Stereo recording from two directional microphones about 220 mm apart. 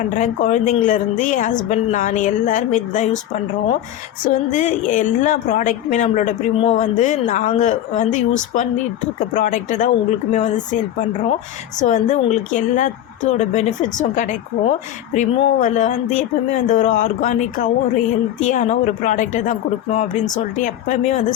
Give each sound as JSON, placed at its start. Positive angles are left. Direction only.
{"t": 0.1, "sound": "speech", "side_deg": 35}